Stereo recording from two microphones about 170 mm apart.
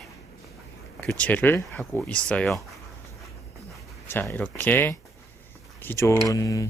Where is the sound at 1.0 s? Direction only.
10° left (ahead or behind).